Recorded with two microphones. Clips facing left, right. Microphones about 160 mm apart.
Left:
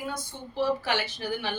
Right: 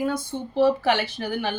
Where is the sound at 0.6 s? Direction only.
60° right (ahead or behind).